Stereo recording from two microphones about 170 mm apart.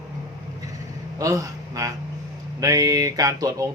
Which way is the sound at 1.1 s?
20° right (ahead or behind).